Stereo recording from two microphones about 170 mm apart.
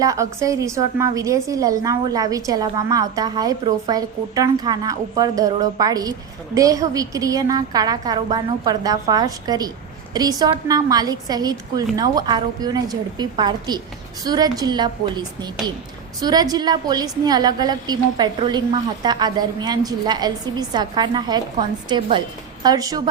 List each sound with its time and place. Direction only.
0.0 s a woman's voice: 20° right (ahead or behind)